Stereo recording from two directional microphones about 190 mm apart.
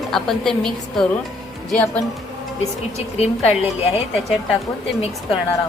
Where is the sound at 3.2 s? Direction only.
30° left (ahead or behind).